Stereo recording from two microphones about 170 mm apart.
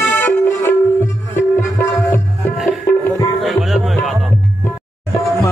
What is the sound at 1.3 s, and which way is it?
Music, 15° left (ahead or behind).